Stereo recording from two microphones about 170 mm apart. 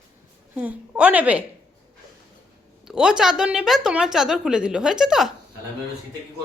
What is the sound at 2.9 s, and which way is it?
A woman's voice, 5° right (ahead or behind).